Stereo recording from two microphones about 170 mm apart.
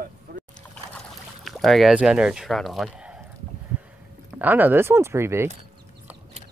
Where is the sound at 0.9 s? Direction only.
Centre (ahead or behind).